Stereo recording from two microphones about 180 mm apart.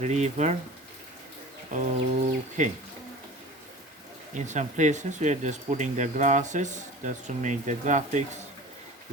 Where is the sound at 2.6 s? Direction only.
45° right (ahead or behind).